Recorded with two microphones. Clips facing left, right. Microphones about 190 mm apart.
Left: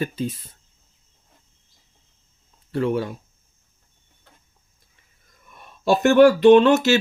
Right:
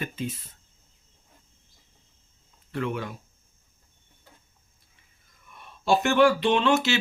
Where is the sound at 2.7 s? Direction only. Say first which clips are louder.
Left 7 dB; 35° left (ahead or behind).